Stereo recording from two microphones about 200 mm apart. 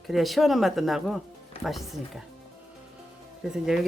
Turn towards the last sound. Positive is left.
turn(degrees=-5)  # may be behind; listen again after turning